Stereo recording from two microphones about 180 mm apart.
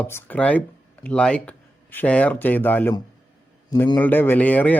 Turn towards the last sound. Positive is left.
turn(degrees=10)  # may be behind; listen again after turning